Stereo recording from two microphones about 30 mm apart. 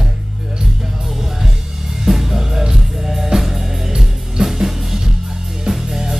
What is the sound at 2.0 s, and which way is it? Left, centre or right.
Music, centre.